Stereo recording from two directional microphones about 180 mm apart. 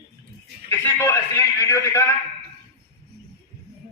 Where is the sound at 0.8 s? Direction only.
15° left (ahead or behind).